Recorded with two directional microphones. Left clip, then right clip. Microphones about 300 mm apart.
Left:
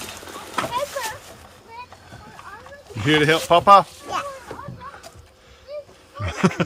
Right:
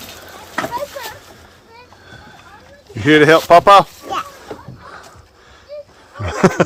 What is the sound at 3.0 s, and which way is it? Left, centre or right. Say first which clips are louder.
Speech: right 8 dB; centre.